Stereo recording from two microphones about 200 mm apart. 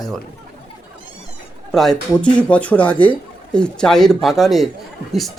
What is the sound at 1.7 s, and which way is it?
Speech, centre (ahead or behind).